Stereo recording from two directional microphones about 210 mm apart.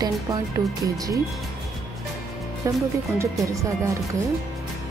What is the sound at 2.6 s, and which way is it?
A woman's voice, 15° right (ahead or behind).